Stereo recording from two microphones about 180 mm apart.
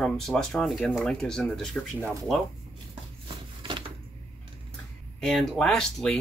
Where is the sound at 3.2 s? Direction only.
30° right (ahead or behind).